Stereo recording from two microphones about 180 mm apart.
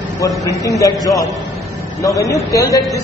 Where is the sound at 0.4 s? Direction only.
20° left (ahead or behind).